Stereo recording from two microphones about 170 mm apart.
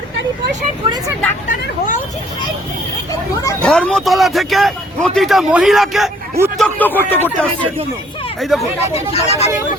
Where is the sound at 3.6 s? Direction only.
5° left (ahead or behind).